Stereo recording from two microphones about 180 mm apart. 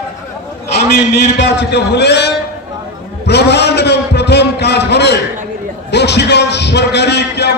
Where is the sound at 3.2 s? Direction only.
65° left (ahead or behind).